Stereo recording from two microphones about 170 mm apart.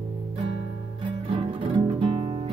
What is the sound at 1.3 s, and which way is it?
Music, 30° right (ahead or behind).